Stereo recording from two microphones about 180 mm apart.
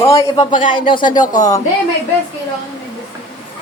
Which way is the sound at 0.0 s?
20° left (ahead or behind).